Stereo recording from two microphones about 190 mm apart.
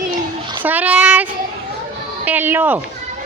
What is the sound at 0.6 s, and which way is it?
Speech, 10° right (ahead or behind).